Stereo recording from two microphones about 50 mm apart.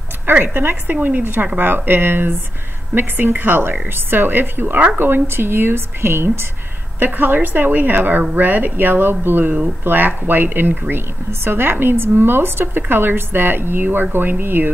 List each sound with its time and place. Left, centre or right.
0.6 s a woman's voice: right